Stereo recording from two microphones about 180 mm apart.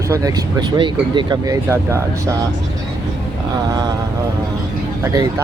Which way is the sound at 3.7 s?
20° right (ahead or behind).